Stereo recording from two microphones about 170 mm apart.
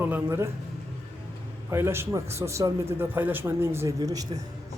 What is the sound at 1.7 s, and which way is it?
Speech, 15° right (ahead or behind).